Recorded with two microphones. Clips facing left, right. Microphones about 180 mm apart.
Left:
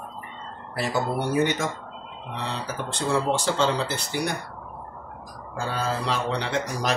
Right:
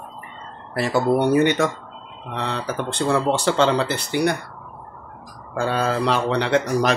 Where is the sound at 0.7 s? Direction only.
65° right (ahead or behind).